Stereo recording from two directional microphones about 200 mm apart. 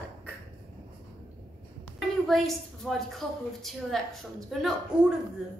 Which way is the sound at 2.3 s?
Centre (ahead or behind).